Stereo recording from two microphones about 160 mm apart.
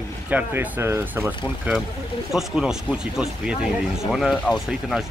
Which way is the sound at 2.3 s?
5° right (ahead or behind).